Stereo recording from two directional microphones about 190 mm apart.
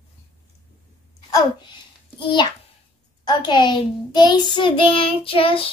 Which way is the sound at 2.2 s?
25° left (ahead or behind).